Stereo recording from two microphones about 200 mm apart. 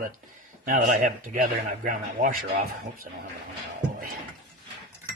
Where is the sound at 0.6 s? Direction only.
40° right (ahead or behind).